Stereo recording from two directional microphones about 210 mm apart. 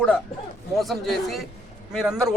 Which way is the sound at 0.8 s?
Centre (ahead or behind).